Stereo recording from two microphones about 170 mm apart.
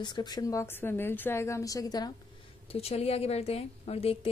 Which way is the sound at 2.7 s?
35° left (ahead or behind).